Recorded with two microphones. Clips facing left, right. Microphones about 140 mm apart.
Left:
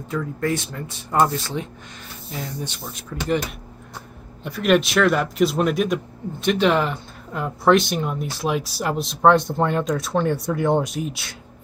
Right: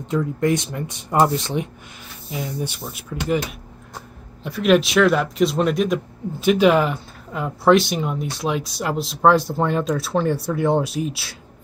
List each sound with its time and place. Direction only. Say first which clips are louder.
0.1 s speech: right 4 dB; 20° right (ahead or behind); by 11.3 s centre (ahead or behind)